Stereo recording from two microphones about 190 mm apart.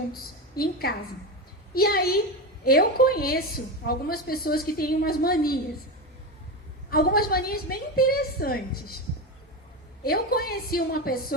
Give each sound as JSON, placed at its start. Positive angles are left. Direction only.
{"t": 0.1, "sound": "a woman's voice", "side_deg": 50}
{"t": 6.9, "sound": "a woman's voice", "side_deg": 50}
{"t": 10.0, "sound": "a woman's voice", "side_deg": 50}